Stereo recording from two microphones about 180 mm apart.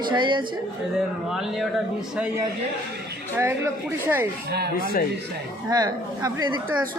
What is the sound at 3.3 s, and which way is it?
Speech, 15° right (ahead or behind).